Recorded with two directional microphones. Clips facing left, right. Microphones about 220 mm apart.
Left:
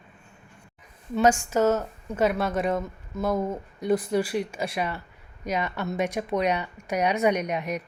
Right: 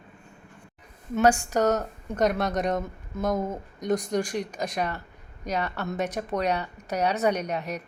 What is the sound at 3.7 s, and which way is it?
Speech, 5° left (ahead or behind).